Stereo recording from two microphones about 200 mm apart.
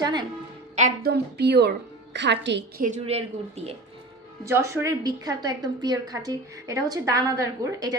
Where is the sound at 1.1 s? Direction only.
55° right (ahead or behind).